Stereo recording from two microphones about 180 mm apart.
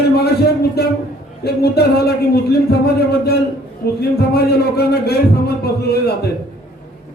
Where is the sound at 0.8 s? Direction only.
60° left (ahead or behind).